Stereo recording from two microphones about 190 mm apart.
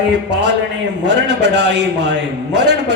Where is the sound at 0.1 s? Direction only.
65° right (ahead or behind).